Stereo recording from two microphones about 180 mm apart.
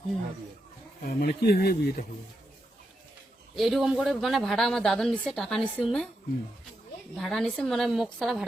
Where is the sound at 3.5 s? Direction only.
Centre (ahead or behind).